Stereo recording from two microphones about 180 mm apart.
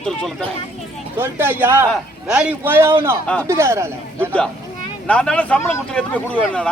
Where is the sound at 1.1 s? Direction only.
10° right (ahead or behind).